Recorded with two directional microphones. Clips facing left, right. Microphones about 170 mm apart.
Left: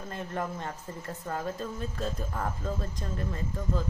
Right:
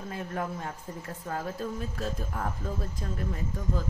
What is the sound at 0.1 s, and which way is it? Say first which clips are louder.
Speech: even; 5° right (ahead or behind).